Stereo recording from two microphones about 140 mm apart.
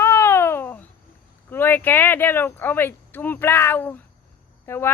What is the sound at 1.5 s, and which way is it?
Speech, 15° left (ahead or behind).